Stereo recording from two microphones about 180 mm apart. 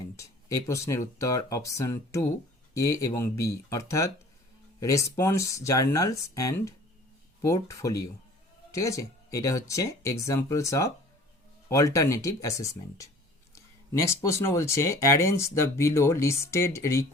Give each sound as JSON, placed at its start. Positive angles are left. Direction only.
{"t": 0.0, "sound": "speech", "side_deg": 15}